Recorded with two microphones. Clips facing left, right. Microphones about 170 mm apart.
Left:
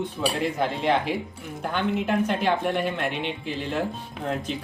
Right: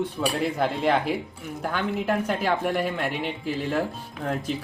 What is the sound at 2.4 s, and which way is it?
Speech, 5° right (ahead or behind).